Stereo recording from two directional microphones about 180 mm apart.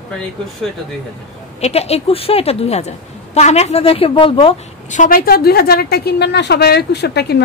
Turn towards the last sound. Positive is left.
turn(degrees=65)  # may be behind; listen again after turning